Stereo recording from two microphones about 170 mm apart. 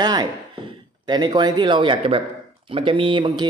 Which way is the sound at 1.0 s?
25° right (ahead or behind).